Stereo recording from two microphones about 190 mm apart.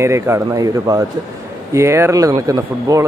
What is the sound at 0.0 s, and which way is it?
Speech, 15° right (ahead or behind).